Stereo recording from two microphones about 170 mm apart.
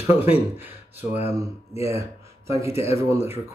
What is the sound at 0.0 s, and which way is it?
Speech, 15° right (ahead or behind).